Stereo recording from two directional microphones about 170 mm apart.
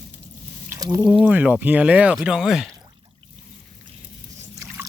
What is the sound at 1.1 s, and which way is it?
Speech, 5° right (ahead or behind).